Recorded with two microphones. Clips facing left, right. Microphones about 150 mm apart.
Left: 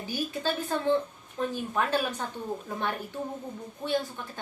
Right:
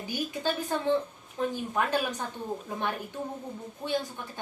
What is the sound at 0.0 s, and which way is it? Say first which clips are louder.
A woman's voice: even; 15° right (ahead or behind).